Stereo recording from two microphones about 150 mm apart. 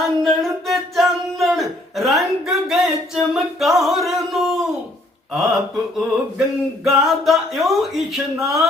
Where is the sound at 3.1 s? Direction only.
Centre (ahead or behind).